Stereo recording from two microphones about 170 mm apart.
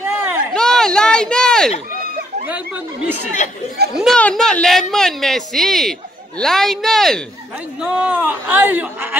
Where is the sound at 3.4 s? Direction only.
45° left (ahead or behind).